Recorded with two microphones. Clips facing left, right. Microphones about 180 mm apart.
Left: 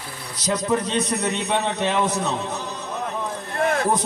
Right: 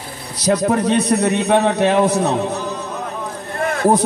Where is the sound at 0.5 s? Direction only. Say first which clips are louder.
Right 7 dB; 65° right (ahead or behind).